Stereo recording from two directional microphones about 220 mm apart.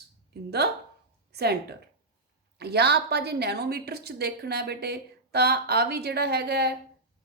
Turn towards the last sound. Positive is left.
turn(degrees=-45)  # may be behind; listen again after turning